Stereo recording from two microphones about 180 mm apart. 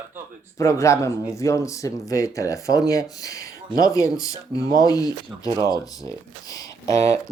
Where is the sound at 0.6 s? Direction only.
15° left (ahead or behind).